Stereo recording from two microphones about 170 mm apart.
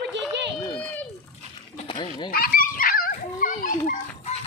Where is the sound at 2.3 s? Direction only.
55° left (ahead or behind).